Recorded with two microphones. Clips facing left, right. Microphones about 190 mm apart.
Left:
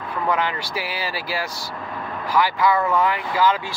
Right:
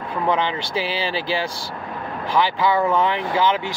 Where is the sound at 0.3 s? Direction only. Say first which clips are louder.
Right 2 dB; 25° right (ahead or behind).